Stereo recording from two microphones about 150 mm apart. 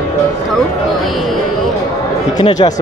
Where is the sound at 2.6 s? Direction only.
35° left (ahead or behind).